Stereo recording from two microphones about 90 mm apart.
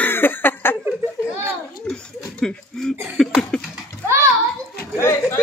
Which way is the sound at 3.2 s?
5° left (ahead or behind).